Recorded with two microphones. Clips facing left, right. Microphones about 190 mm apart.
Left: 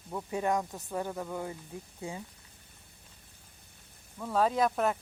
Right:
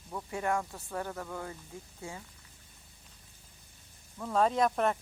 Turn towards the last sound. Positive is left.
turn(degrees=0)  # may be behind; listen again after turning